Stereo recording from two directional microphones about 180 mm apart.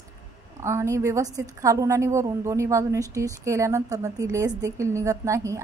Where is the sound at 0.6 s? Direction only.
15° right (ahead or behind).